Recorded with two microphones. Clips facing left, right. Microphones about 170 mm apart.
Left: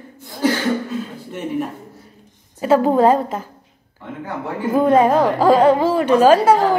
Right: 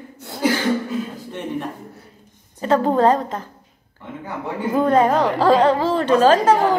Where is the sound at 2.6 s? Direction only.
10° left (ahead or behind).